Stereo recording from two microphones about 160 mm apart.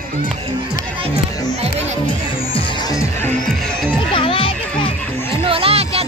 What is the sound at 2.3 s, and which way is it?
Music, 35° left (ahead or behind).